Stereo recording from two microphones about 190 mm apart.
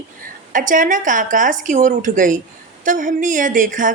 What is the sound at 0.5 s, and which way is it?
A woman's voice, 45° right (ahead or behind).